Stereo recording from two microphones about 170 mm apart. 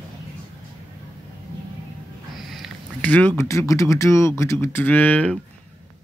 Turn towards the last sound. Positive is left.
turn(degrees=10)  # may be behind; listen again after turning